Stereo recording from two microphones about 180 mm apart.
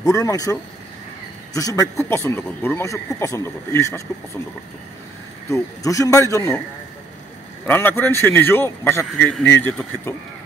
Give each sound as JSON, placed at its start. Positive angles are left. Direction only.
{"t": 0.0, "sound": "speech", "side_deg": 20}
{"t": 5.5, "sound": "speech", "side_deg": 20}
{"t": 7.6, "sound": "speech", "side_deg": 10}